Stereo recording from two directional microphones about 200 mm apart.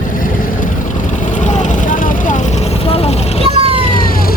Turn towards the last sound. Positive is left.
turn(degrees=-30)  # may be behind; listen again after turning